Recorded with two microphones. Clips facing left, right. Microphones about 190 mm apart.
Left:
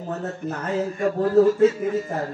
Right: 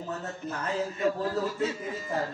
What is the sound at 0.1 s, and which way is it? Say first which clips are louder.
A man's voice: left 8 dB; 50° left (ahead or behind).